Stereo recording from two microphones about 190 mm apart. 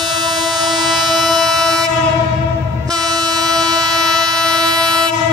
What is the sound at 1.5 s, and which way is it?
Train, 20° right (ahead or behind).